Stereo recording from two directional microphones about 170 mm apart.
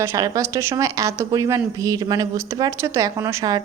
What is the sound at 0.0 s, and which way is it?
A woman's voice, 20° right (ahead or behind).